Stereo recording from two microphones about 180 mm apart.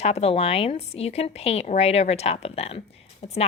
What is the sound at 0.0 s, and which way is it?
A woman's voice, 35° left (ahead or behind).